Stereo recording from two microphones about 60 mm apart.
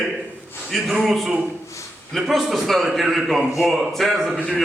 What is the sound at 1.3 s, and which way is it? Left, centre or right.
Speech, centre.